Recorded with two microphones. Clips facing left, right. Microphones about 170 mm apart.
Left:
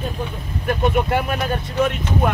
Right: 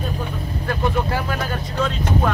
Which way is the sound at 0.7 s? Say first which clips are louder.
Left 4 dB; 20° left (ahead or behind).